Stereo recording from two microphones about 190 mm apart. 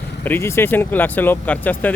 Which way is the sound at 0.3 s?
15° left (ahead or behind).